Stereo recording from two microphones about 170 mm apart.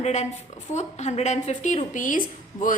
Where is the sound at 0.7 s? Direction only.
40° left (ahead or behind).